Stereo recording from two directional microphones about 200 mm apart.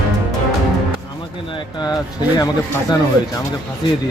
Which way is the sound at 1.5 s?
20° left (ahead or behind).